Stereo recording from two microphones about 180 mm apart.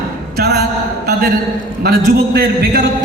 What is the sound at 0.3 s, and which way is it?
Speech, 65° right (ahead or behind).